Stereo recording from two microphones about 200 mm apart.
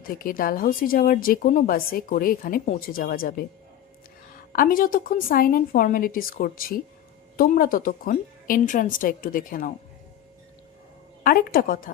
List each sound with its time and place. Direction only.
0.1 s a woman's voice: 45° left (ahead or behind)
4.5 s a woman's voice: 45° left (ahead or behind)
11.2 s a woman's voice: 50° left (ahead or behind)